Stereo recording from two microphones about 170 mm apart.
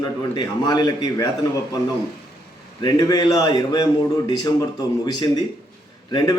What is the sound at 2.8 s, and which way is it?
A man's voice, 25° left (ahead or behind).